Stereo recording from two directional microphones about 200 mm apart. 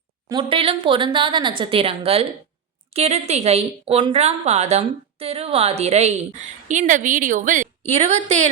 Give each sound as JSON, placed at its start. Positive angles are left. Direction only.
{"t": 0.3, "sound": "a woman's voice", "side_deg": -25}